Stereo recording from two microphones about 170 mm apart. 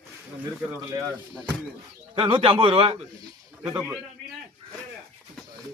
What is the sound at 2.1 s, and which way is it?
Speech, 30° right (ahead or behind).